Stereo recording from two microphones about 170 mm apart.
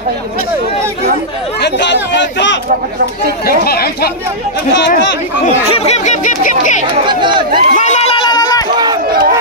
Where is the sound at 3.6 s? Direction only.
65° left (ahead or behind).